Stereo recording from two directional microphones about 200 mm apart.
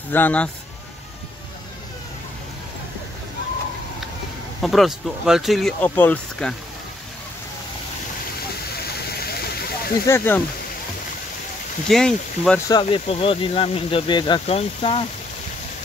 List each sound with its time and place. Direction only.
0.1 s speech: 10° left (ahead or behind)
4.6 s speech: centre (ahead or behind)
10.0 s speech: 10° left (ahead or behind)
11.9 s speech: 5° left (ahead or behind)
12.5 s speech: 15° left (ahead or behind)
12.8 s speech: 30° left (ahead or behind)